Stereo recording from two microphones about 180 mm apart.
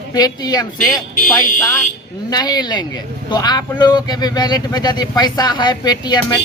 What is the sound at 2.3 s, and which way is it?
Speech, 20° left (ahead or behind).